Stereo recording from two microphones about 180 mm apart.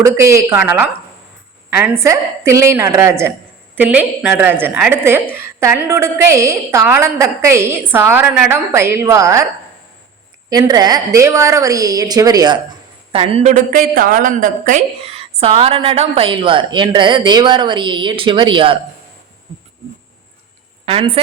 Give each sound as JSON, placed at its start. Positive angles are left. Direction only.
{"t": 0.0, "sound": "a woman's voice", "side_deg": -15}
{"t": 2.0, "sound": "a woman's voice", "side_deg": -15}
{"t": 10.5, "sound": "a woman's voice", "side_deg": -20}
{"t": 13.1, "sound": "speech", "side_deg": -30}
{"t": 13.5, "sound": "a woman's voice", "side_deg": -50}
{"t": 20.8, "sound": "a woman's voice", "side_deg": -35}